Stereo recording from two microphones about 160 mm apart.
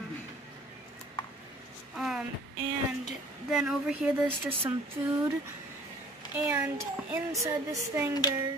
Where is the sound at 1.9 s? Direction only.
Centre (ahead or behind).